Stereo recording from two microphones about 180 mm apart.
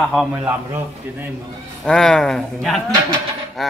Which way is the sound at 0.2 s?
Centre (ahead or behind).